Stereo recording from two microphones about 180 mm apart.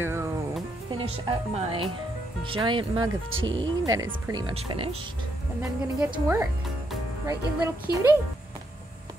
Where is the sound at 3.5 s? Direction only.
20° right (ahead or behind).